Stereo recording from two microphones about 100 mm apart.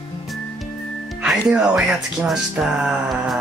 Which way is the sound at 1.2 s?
5° right (ahead or behind).